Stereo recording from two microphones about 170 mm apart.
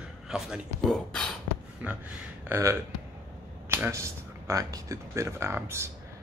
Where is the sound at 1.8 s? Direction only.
10° right (ahead or behind).